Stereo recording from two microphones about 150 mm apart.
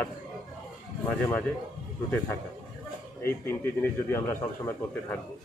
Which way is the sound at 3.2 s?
15° left (ahead or behind).